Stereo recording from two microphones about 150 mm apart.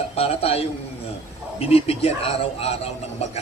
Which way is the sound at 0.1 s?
40° left (ahead or behind).